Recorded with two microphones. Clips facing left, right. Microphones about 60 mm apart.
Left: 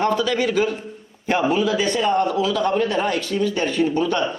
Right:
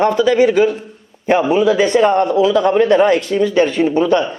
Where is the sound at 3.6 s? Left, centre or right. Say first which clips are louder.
Right 6 dB; right.